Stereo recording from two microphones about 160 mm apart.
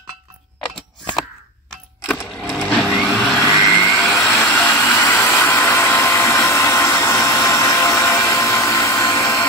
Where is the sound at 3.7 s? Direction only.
10° left (ahead or behind).